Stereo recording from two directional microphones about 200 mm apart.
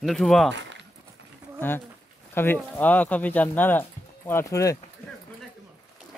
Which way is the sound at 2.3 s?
10° left (ahead or behind).